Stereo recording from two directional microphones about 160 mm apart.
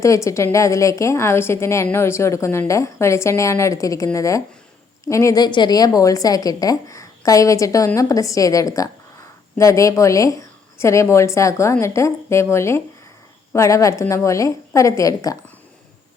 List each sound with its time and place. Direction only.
0.3 s a woman's voice: 20° left (ahead or behind)